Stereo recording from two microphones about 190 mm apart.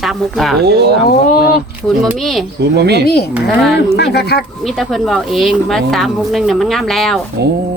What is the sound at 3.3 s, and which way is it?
Speech, 5° right (ahead or behind).